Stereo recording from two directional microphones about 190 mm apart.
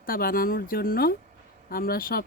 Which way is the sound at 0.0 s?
50° left (ahead or behind).